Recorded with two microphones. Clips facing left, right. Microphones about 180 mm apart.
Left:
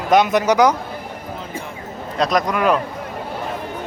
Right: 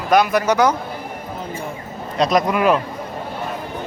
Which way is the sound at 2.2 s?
5° right (ahead or behind).